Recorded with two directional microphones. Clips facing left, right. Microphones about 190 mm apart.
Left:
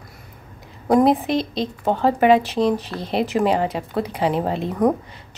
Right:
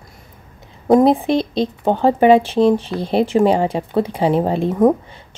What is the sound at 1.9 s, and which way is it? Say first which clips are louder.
Speech: right 4 dB; 30° right (ahead or behind).